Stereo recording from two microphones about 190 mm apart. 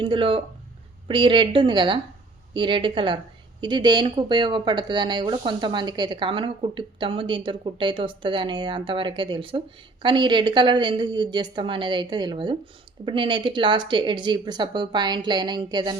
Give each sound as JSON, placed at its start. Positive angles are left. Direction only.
{"t": 0.0, "sound": "speech", "side_deg": -25}